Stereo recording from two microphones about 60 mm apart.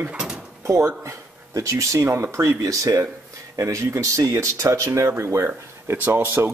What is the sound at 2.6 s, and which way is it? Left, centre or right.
Speech, right.